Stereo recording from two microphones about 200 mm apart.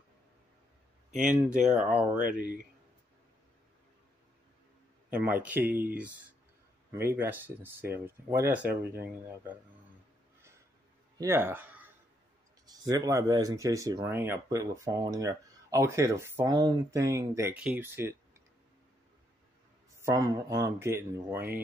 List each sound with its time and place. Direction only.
1.3 s speech: 5° right (ahead or behind)
5.1 s speech: 10° right (ahead or behind)
11.1 s speech: 15° right (ahead or behind)
20.1 s speech: 15° right (ahead or behind)